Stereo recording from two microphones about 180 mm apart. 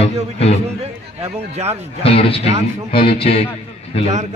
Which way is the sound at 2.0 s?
30° left (ahead or behind).